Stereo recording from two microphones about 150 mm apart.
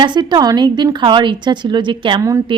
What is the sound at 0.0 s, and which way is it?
A woman's voice, 30° right (ahead or behind).